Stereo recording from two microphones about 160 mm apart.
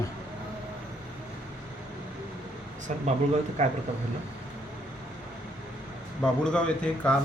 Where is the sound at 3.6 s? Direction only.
45° right (ahead or behind).